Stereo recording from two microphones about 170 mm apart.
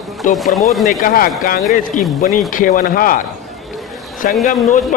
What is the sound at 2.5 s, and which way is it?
Speech, 55° left (ahead or behind).